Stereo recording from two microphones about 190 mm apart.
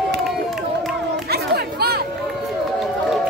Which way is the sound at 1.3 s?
55° right (ahead or behind).